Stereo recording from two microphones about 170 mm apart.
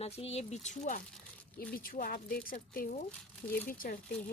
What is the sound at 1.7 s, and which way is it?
A woman's voice, 60° left (ahead or behind).